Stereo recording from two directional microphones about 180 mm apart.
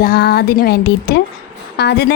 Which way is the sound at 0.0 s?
60° left (ahead or behind).